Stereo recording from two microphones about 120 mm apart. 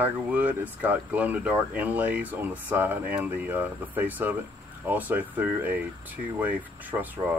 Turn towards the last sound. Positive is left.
turn(degrees=-15)  # may be behind; listen again after turning